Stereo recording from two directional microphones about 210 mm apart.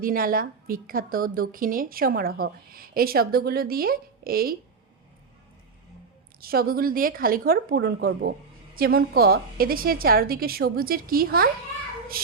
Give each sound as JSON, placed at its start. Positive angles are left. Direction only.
{"t": 0.0, "sound": "a woman's voice", "side_deg": -45}
{"t": 6.4, "sound": "a woman's voice", "side_deg": -45}